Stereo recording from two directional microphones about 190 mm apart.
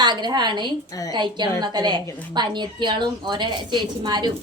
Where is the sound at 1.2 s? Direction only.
25° right (ahead or behind).